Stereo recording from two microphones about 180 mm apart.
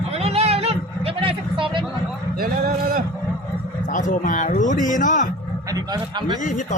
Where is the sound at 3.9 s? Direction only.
45° left (ahead or behind).